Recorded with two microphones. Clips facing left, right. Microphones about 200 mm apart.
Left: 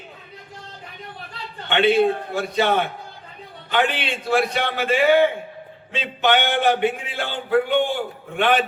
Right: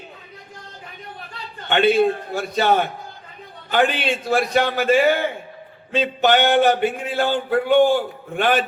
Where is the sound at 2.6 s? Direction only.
40° right (ahead or behind).